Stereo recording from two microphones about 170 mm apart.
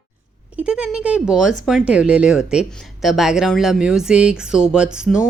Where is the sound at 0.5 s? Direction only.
5° right (ahead or behind).